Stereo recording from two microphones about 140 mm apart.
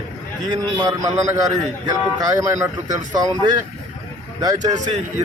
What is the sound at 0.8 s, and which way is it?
Speech, 25° right (ahead or behind).